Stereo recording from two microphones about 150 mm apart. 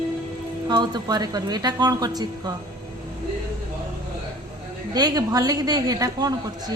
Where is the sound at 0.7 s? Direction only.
30° right (ahead or behind).